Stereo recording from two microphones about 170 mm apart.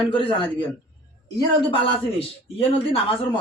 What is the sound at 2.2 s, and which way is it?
Speech, 35° left (ahead or behind).